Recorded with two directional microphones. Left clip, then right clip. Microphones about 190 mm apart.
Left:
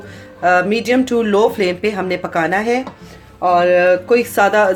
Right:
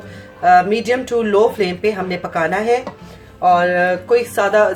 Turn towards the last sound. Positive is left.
turn(degrees=40)  # may be behind; listen again after turning